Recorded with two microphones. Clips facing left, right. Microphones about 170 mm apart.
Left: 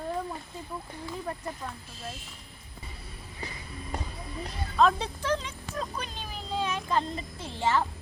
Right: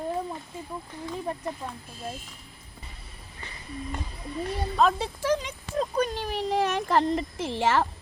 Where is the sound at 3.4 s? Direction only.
40° left (ahead or behind).